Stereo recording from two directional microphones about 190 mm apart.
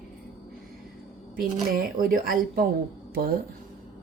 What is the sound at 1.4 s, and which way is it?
A woman's voice, 45° right (ahead or behind).